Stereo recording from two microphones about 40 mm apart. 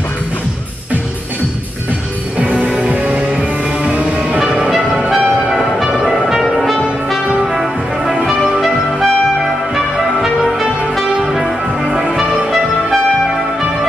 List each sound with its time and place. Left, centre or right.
2.3 s music: right
5.8 s music: centre
7.5 s music: centre
10.4 s music: centre
12.2 s music: centre